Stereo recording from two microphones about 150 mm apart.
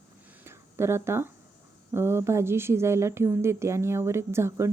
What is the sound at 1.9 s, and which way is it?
A woman's voice, 15° right (ahead or behind).